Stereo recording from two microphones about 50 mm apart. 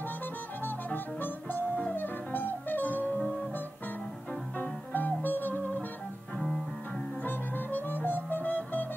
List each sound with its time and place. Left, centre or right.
0.7 s music: left
4.6 s music: left
7.2 s music: left